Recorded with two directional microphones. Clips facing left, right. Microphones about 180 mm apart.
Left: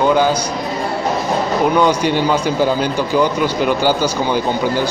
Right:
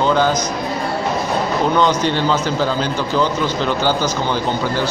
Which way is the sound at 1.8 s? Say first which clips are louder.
Left 2 dB; 10° left (ahead or behind).